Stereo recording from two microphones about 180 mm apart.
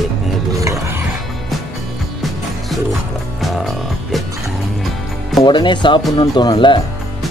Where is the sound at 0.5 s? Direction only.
20° right (ahead or behind).